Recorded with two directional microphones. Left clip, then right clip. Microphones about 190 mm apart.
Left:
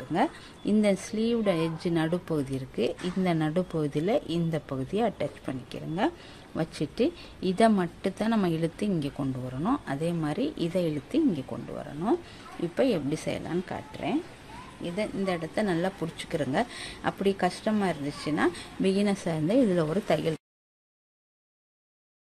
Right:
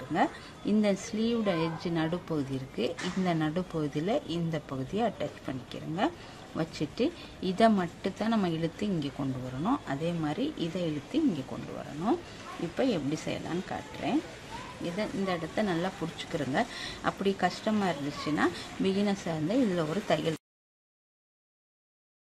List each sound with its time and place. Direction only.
0.1 s speech: 25° left (ahead or behind)